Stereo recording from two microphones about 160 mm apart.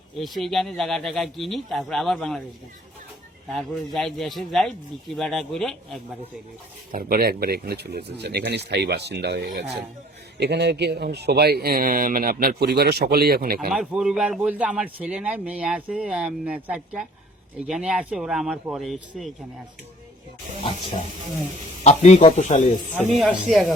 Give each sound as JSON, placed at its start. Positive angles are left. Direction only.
{"t": 0.2, "sound": "speech", "side_deg": 0}
{"t": 3.5, "sound": "speech", "side_deg": 0}
{"t": 6.9, "sound": "speech", "side_deg": -65}
{"t": 13.7, "sound": "a man's voice", "side_deg": -5}
{"t": 21.8, "sound": "speech", "side_deg": 45}
{"t": 23.2, "sound": "speech", "side_deg": 0}